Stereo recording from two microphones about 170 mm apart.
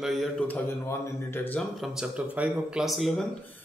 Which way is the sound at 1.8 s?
5° right (ahead or behind).